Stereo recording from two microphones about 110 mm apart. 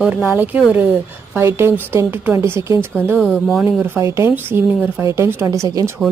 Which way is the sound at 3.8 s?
25° right (ahead or behind).